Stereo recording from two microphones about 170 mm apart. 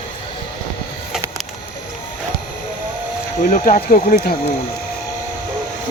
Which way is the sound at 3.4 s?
50° left (ahead or behind).